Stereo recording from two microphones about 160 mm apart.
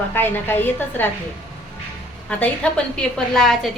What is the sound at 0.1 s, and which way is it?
A woman's voice, 15° left (ahead or behind).